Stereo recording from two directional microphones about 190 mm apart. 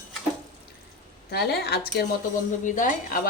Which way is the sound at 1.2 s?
60° left (ahead or behind).